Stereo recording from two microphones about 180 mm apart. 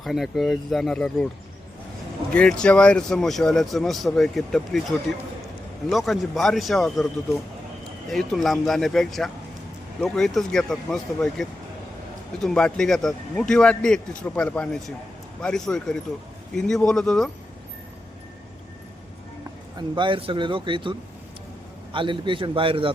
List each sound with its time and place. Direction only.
0.0 s speech: centre (ahead or behind)
2.3 s speech: 5° left (ahead or behind)
20.0 s speech: 30° right (ahead or behind)
21.9 s speech: 30° right (ahead or behind)